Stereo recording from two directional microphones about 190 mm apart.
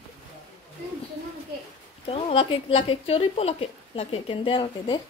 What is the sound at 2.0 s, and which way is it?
Speech, 30° left (ahead or behind).